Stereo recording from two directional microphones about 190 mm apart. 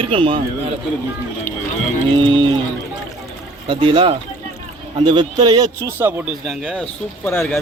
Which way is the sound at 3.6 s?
25° right (ahead or behind).